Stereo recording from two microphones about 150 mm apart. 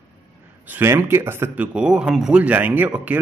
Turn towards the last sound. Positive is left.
turn(degrees=-10)  # may be behind; listen again after turning